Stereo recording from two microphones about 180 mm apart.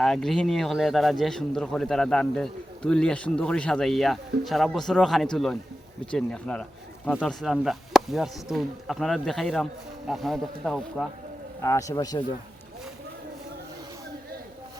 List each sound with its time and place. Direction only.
0.0 s speech: centre (ahead or behind)
11.6 s a man's voice: 15° left (ahead or behind)